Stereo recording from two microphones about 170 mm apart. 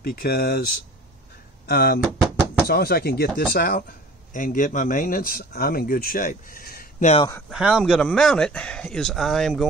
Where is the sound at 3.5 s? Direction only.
55° left (ahead or behind).